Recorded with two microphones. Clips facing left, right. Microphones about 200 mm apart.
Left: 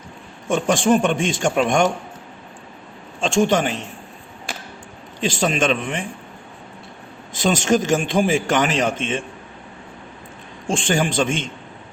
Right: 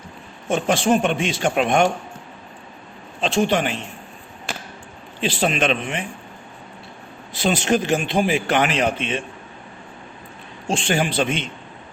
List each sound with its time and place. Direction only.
0.4 s a man's voice: 50° left (ahead or behind)
3.2 s a man's voice: 45° left (ahead or behind)
5.3 s a man's voice: 45° left (ahead or behind)
7.3 s a man's voice: 45° left (ahead or behind)
10.7 s a man's voice: 50° left (ahead or behind)